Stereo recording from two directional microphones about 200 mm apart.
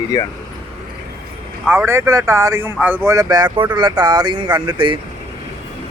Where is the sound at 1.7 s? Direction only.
10° right (ahead or behind).